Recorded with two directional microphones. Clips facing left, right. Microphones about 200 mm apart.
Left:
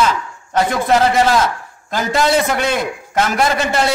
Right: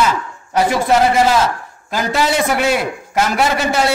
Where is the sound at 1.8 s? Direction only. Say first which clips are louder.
Left 1 dB; 10° right (ahead or behind).